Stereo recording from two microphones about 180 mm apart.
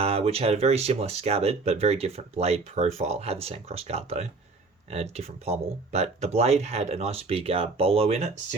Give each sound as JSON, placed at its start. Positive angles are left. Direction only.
{"t": 0.0, "sound": "speech", "side_deg": -35}